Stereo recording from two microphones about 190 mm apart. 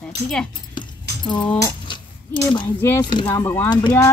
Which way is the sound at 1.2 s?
25° left (ahead or behind).